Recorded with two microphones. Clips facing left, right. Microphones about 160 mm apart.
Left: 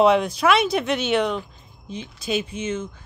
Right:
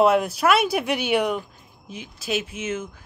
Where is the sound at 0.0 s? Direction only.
5° right (ahead or behind).